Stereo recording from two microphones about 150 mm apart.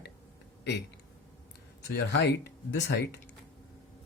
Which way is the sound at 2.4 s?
90° left.